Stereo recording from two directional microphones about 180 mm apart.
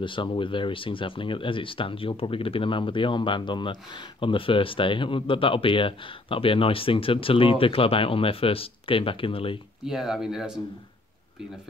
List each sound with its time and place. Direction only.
0.0 s speech: 25° left (ahead or behind)
9.8 s speech: centre (ahead or behind)